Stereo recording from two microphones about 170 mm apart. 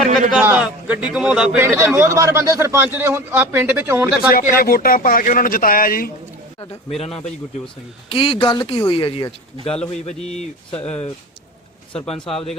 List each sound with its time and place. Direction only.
0.0 s a man's voice: 5° right (ahead or behind)
1.6 s a man's voice: 15° right (ahead or behind)
4.4 s speech: 60° left (ahead or behind)
6.9 s a man's voice: 35° left (ahead or behind)
10.2 s a man's voice: 5° left (ahead or behind)
10.7 s speech: 35° left (ahead or behind)
11.9 s a man's voice: 5° left (ahead or behind)